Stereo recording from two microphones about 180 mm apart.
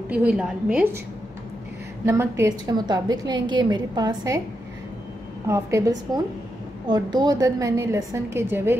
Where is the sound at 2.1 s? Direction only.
15° right (ahead or behind).